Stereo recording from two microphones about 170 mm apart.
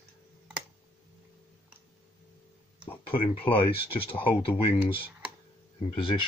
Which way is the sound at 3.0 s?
30° left (ahead or behind).